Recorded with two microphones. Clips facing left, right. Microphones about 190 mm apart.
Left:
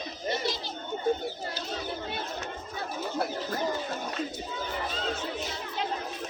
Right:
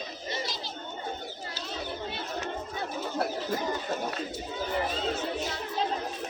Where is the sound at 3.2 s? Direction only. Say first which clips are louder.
Right 2 dB; centre (ahead or behind).